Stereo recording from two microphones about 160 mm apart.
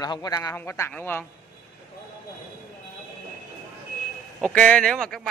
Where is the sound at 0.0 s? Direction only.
25° left (ahead or behind).